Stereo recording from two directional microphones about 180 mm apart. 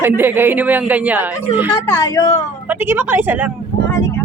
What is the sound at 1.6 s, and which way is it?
Speech, 20° left (ahead or behind).